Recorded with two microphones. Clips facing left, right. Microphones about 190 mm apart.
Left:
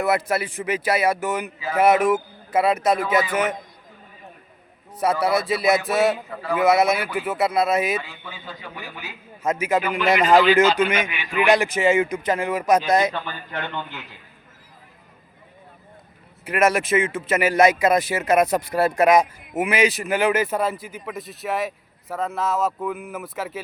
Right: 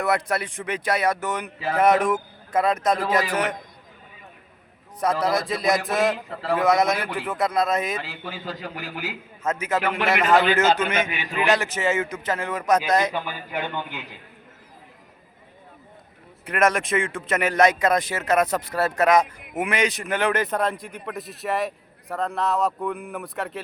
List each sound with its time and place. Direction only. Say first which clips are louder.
0.0 s a man's voice: left 2 dB; 5° left (ahead or behind)
4.9 s a man's voice: left 2 dB; 5° left (ahead or behind)
8.4 s a man's voice: right 2 dB; 90° right
9.4 s a man's voice: left 3 dB; 10° left (ahead or behind)
11.1 s a man's voice: left 3 dB; 40° right (ahead or behind)
11.4 s a man's voice: left 4 dB; 15° left (ahead or behind)
13.1 s a man's voice: right 1 dB; 10° right (ahead or behind)
16.4 s a man's voice: left 2 dB; 5° left (ahead or behind)